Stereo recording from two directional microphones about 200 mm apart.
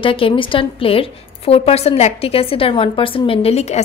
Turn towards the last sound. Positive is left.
turn(degrees=35)  # may be behind; listen again after turning